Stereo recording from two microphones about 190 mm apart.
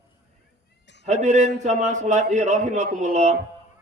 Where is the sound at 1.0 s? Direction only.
40° right (ahead or behind).